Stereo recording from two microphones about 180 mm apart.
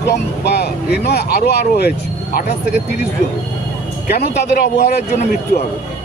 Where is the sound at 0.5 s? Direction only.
65° left (ahead or behind).